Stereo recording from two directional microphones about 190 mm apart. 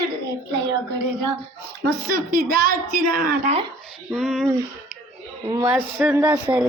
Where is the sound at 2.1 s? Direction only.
50° right (ahead or behind).